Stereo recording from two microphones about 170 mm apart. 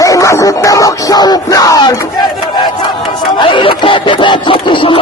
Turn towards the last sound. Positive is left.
turn(degrees=30)  # may be behind; listen again after turning